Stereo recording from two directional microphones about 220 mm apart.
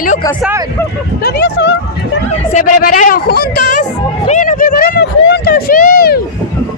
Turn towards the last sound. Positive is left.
turn(degrees=40)  # may be behind; listen again after turning